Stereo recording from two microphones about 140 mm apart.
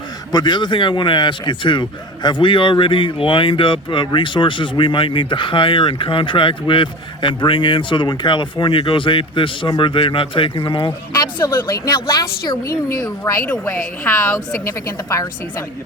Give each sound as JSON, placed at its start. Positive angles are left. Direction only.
{"t": 0.3, "sound": "a man's voice", "side_deg": 30}
{"t": 11.1, "sound": "a woman's voice", "side_deg": 25}
{"t": 13.0, "sound": "a woman's voice", "side_deg": 20}